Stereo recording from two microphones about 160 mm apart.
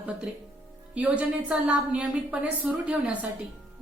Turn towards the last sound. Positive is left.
turn(degrees=-10)  # may be behind; listen again after turning